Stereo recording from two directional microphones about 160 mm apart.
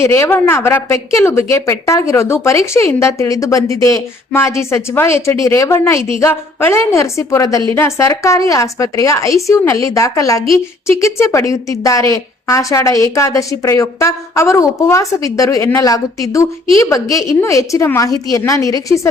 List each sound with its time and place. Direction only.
0.0 s a woman's voice: 15° left (ahead or behind)